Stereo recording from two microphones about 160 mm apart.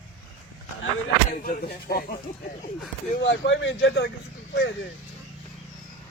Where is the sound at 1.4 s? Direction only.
70° left (ahead or behind).